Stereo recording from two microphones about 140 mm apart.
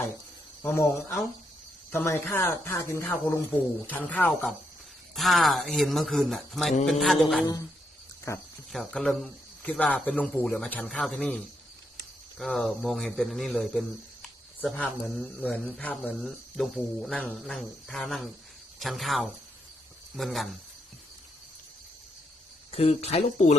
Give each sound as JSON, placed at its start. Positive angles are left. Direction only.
{"t": 0.6, "sound": "speech", "side_deg": 20}
{"t": 5.1, "sound": "a man's voice", "side_deg": 0}
{"t": 8.3, "sound": "speech", "side_deg": 20}
{"t": 8.7, "sound": "a man's voice", "side_deg": 5}
{"t": 22.7, "sound": "speech", "side_deg": 45}